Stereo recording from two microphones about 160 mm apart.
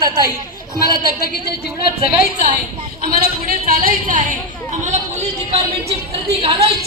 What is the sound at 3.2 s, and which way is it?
Speech, 65° right (ahead or behind).